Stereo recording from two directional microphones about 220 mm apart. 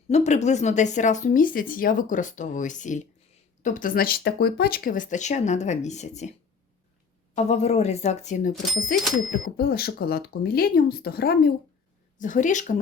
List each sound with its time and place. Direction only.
0.1 s speech: 30° left (ahead or behind)
7.3 s speech: 30° left (ahead or behind)
9.6 s speech: 45° left (ahead or behind)